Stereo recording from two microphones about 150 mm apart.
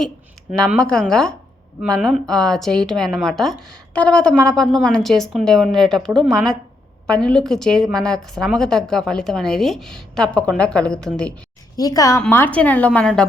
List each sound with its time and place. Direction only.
0.8 s a woman's voice: 5° left (ahead or behind)
11.8 s a woman's voice: 25° left (ahead or behind)
12.3 s speech: 10° left (ahead or behind)